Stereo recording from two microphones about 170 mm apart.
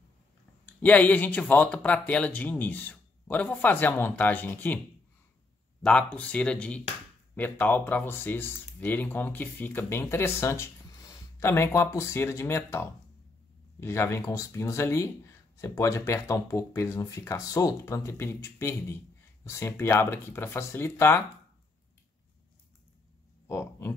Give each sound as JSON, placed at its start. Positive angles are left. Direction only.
{"t": 0.8, "sound": "speech", "side_deg": 10}
{"t": 5.8, "sound": "speech", "side_deg": 5}
{"t": 23.4, "sound": "a sound", "side_deg": 15}